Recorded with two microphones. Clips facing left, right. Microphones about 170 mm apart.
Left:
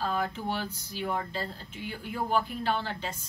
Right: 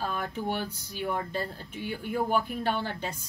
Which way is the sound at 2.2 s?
50° right (ahead or behind).